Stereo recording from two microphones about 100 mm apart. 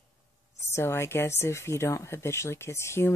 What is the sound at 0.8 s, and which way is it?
Speech, 25° left (ahead or behind).